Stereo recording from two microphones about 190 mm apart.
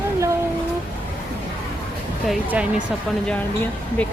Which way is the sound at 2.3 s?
5° right (ahead or behind).